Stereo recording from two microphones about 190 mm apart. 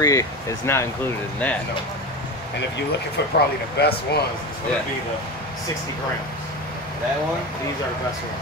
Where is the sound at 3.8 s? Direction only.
60° left (ahead or behind).